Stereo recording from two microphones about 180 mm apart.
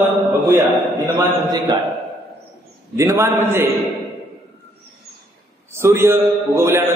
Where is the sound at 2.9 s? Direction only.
15° right (ahead or behind).